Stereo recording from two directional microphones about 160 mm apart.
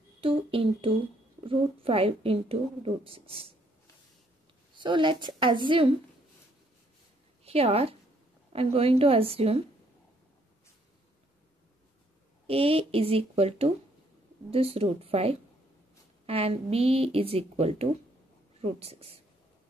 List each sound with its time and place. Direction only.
0.2 s a woman's voice: 35° right (ahead or behind)
4.7 s a woman's voice: 30° right (ahead or behind)
7.4 s a woman's voice: 40° right (ahead or behind)
12.4 s a woman's voice: 35° right (ahead or behind)